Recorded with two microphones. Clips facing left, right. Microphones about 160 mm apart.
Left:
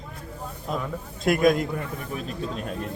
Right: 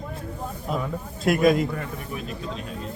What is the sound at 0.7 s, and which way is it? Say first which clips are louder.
Speech: right 1 dB; 5° right (ahead or behind).